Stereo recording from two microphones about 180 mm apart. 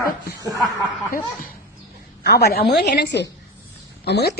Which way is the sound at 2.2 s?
65° left (ahead or behind).